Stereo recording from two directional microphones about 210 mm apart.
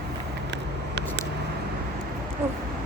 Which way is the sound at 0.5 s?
55° right (ahead or behind).